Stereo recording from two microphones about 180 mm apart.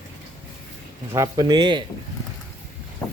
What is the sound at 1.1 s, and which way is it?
Speech, 20° right (ahead or behind).